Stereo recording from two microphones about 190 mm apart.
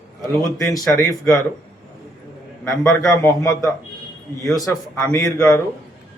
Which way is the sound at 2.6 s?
5° left (ahead or behind).